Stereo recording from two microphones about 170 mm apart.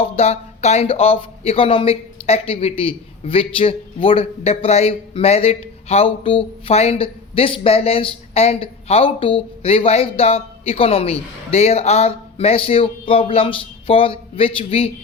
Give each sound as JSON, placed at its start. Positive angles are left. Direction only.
{"t": 0.0, "sound": "speech", "side_deg": 35}